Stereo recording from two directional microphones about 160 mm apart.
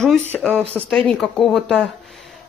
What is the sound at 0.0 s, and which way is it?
Speech, 5° left (ahead or behind).